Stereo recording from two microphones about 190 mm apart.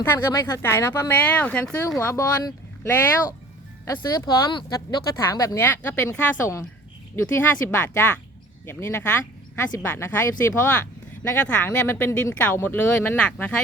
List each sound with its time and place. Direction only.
0.0 s speech: 15° left (ahead or behind)
2.0 s speech: 15° left (ahead or behind)
4.5 s speech: 25° left (ahead or behind); by 13.6 s 5° left (ahead or behind)